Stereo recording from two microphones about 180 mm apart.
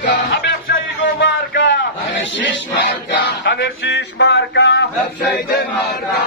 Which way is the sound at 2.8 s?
65° left (ahead or behind).